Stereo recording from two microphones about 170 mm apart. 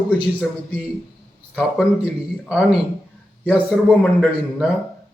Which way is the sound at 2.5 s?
5° right (ahead or behind).